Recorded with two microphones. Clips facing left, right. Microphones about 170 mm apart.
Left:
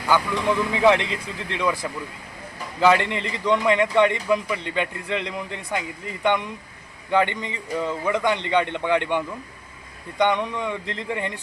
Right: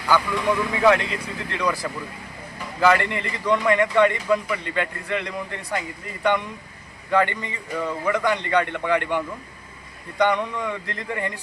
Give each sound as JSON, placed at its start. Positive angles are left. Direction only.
{"t": 0.7, "sound": "a man's voice", "side_deg": 20}